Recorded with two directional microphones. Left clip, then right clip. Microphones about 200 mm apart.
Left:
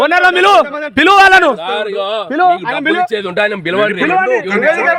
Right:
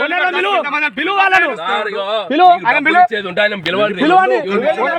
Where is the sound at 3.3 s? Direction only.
55° left (ahead or behind).